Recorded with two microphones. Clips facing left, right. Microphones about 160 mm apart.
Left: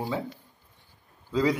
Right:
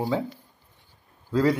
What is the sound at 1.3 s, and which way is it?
Speech, centre (ahead or behind).